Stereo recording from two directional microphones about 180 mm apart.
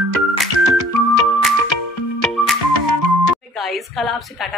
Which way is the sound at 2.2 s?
Centre (ahead or behind).